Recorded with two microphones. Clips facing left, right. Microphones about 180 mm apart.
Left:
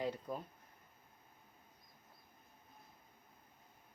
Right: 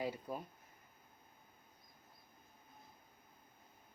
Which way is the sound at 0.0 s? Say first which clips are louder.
Left 1 dB; 10° right (ahead or behind).